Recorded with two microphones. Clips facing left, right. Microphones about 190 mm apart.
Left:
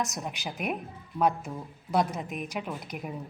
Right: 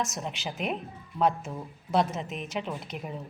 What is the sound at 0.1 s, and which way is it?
Speech, centre (ahead or behind).